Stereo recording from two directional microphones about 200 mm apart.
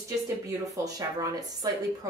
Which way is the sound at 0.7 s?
15° right (ahead or behind).